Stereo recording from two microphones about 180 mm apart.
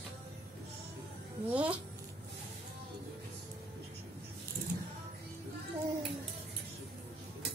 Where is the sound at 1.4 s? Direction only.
10° right (ahead or behind).